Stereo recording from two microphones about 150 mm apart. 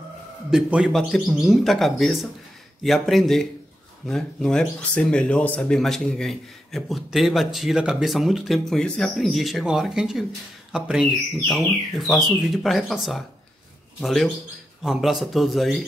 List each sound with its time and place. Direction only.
0.5 s speech: 5° right (ahead or behind)